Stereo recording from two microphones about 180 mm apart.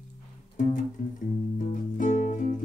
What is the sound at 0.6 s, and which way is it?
Music, 45° left (ahead or behind).